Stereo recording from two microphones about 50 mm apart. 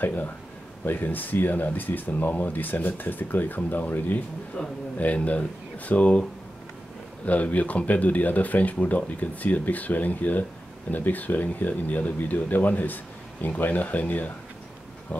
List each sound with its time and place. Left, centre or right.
0.0 s speech: left
4.6 s speech: centre
4.9 s speech: left
7.2 s speech: left